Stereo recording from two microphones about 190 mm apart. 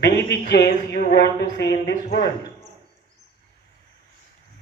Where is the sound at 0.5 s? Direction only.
55° left (ahead or behind).